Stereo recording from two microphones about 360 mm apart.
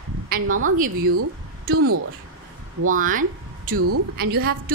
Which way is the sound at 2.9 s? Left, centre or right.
Right.